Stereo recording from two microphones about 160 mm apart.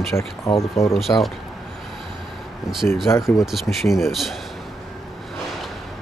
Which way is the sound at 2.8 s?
15° left (ahead or behind).